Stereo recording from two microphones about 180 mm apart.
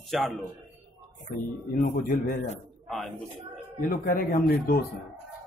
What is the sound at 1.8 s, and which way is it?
Speech, 50° left (ahead or behind).